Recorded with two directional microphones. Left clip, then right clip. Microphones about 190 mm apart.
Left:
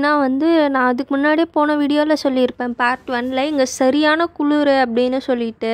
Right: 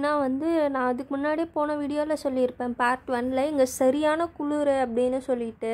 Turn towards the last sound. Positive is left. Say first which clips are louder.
# left 8 dB
turn(degrees=30)  # may be behind; listen again after turning